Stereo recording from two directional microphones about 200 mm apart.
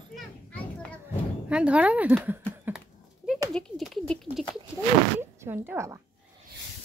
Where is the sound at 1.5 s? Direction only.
5° right (ahead or behind).